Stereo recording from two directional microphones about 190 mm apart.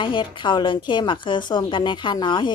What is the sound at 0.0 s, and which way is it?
A woman's voice, 25° left (ahead or behind).